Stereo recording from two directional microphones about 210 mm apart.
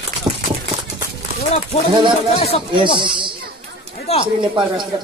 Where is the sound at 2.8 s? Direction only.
25° right (ahead or behind).